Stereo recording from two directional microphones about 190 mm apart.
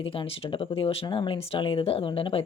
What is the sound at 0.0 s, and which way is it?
A woman's voice, 30° left (ahead or behind).